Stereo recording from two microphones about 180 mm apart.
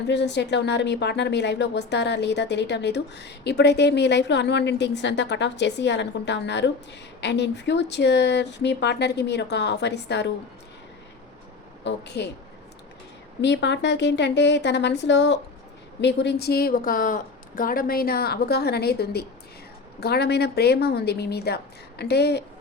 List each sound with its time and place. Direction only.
0.1 s a woman's voice: 75° left (ahead or behind)
11.8 s a woman's voice: 75° left (ahead or behind)
13.4 s a woman's voice: 75° left (ahead or behind)